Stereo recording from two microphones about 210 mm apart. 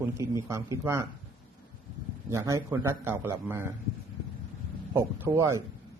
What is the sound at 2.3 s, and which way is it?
A man's voice, 15° right (ahead or behind).